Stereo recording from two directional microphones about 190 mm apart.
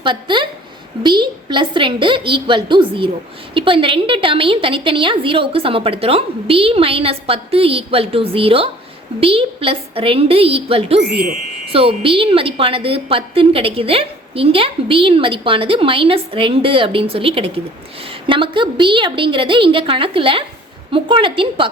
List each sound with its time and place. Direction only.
0.0 s a woman's voice: 25° right (ahead or behind)